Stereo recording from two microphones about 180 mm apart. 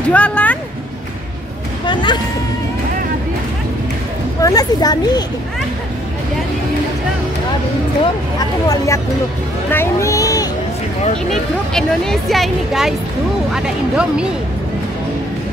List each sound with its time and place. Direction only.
0.1 s speech: 5° left (ahead or behind)
1.9 s speech: 25° left (ahead or behind)
4.4 s speech: 20° left (ahead or behind)
8.4 s speech: 20° left (ahead or behind)
11.7 s speech: 5° left (ahead or behind)